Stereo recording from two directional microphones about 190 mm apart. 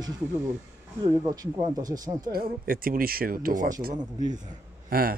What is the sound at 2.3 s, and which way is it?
Speech, 50° right (ahead or behind).